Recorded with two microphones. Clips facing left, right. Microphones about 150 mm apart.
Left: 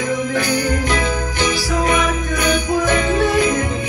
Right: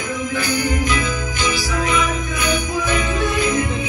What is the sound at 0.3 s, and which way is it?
Jingle bell, 65° left (ahead or behind).